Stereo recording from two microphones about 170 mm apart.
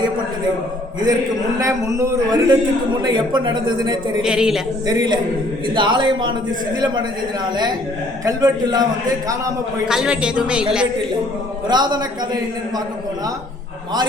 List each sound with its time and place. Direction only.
1.5 s a man's voice: 20° right (ahead or behind)
4.2 s speech: 5° right (ahead or behind)
4.9 s a man's voice: 25° right (ahead or behind)
8.2 s a man's voice: 20° right (ahead or behind)
9.8 s speech: 5° right (ahead or behind)
11.7 s a man's voice: 25° right (ahead or behind)